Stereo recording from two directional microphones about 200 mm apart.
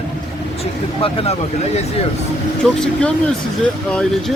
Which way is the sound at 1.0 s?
30° left (ahead or behind).